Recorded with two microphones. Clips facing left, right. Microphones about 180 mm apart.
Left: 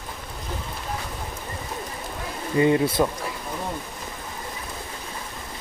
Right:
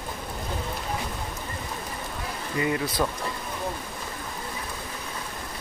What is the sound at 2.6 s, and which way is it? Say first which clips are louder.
Speech: left 7 dB; 25° left (ahead or behind).